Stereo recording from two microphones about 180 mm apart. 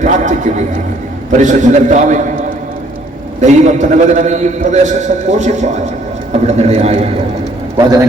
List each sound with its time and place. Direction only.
0.0 s a man's voice: 45° right (ahead or behind)
3.4 s a man's voice: 40° right (ahead or behind)